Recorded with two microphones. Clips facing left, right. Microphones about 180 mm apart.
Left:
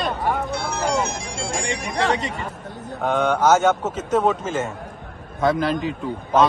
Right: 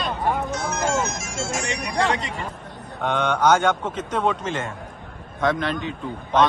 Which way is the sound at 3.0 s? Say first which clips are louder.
Left 2 dB; 5° left (ahead or behind).